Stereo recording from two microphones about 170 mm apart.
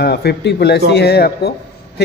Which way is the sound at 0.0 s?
70° left (ahead or behind).